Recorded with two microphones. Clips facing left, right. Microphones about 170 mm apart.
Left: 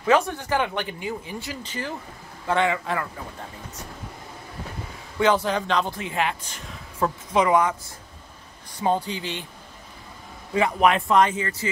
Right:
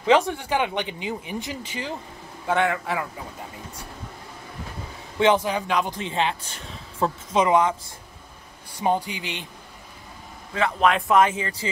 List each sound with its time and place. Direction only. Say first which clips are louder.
0.3 s speech: even; 10° right (ahead or behind)
2.4 s speech: even; 5° right (ahead or behind)
5.2 s speech: right 1 dB; 15° right (ahead or behind)
5.9 s speech: right 1 dB; 25° right (ahead or behind)
8.7 s speech: even; 15° right (ahead or behind)
10.5 s speech: left 1 dB; 10° left (ahead or behind); by 11.3 s 5° right (ahead or behind)